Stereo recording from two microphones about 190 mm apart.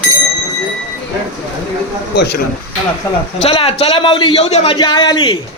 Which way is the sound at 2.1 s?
60° left (ahead or behind).